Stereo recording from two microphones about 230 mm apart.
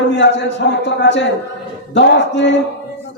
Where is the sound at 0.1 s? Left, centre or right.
Left.